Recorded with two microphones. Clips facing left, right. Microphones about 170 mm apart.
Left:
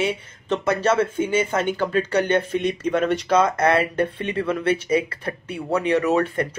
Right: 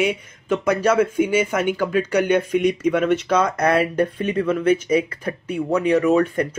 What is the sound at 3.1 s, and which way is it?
Speech, 30° left (ahead or behind).